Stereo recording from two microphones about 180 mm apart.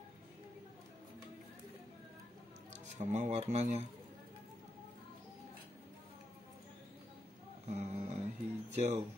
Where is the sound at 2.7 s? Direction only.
40° right (ahead or behind).